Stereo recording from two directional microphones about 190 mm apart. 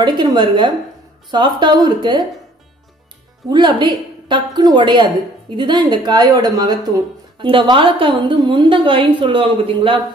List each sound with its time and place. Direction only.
0.0 s a woman's voice: 25° right (ahead or behind)
3.5 s a woman's voice: 25° right (ahead or behind)